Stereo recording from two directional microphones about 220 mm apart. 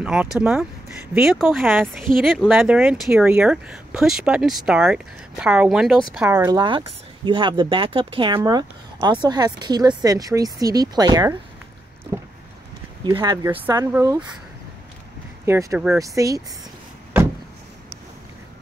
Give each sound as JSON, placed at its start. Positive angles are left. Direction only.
{"t": 0.0, "sound": "speech", "side_deg": -5}
{"t": 12.1, "sound": "a sound", "side_deg": -15}
{"t": 13.0, "sound": "speech", "side_deg": -20}
{"t": 15.4, "sound": "speech", "side_deg": -10}